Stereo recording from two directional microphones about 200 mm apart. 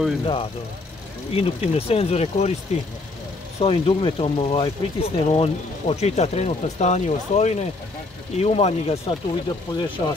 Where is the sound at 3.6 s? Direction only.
30° left (ahead or behind).